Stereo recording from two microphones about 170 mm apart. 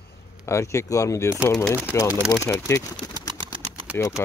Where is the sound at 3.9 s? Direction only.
15° left (ahead or behind).